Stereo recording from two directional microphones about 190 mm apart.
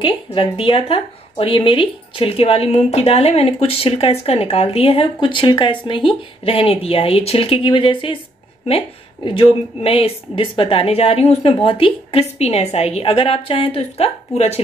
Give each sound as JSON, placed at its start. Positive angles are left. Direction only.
{"t": 0.0, "sound": "speech", "side_deg": 25}